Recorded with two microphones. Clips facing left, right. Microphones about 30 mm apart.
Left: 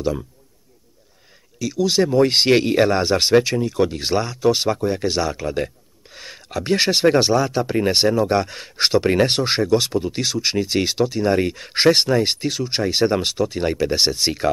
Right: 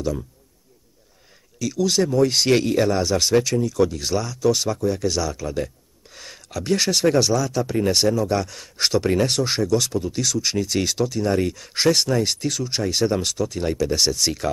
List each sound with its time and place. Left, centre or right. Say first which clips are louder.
1.6 s speech: left 2 dB; centre
2.1 s speech: left 3 dB; left
6.0 s speech: left 3 dB; left